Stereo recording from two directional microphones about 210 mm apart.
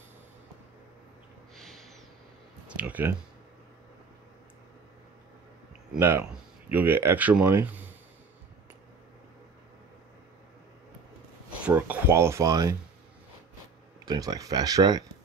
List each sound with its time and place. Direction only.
1.5 s snort: centre (ahead or behind)
2.7 s speech: 5° right (ahead or behind)
5.9 s speech: 10° right (ahead or behind)
11.5 s speech: 5° right (ahead or behind)
14.0 s speech: 20° right (ahead or behind)